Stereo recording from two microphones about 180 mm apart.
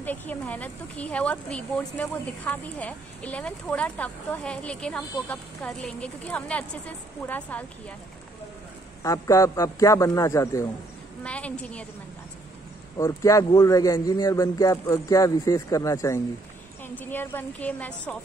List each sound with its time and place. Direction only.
0.0 s speech: 10° left (ahead or behind)
9.0 s speech: 15° left (ahead or behind)
12.9 s a man's voice: 20° left (ahead or behind)